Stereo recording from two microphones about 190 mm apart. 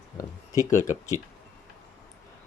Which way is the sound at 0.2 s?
15° left (ahead or behind).